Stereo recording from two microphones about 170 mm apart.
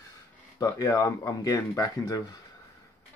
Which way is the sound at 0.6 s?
20° left (ahead or behind).